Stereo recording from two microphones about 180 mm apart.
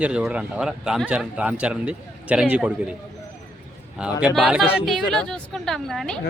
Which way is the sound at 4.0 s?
5° right (ahead or behind).